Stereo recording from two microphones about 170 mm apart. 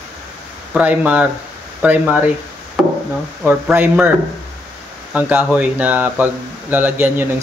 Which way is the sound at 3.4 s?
10° right (ahead or behind).